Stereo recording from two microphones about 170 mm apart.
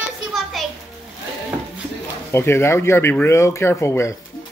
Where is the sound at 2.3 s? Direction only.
15° left (ahead or behind).